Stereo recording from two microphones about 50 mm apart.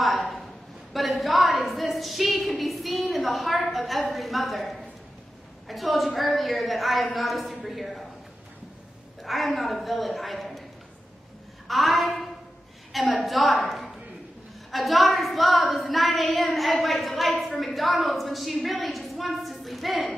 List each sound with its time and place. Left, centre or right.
0.0 s a sound: centre
5.7 s a woman's voice: centre
9.2 s a woman's voice: centre
11.6 s a woman's voice: centre